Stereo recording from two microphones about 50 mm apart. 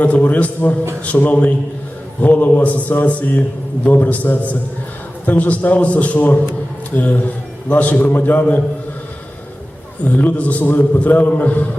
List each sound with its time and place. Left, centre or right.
0.0 s a man's voice: left
10.0 s a man's voice: left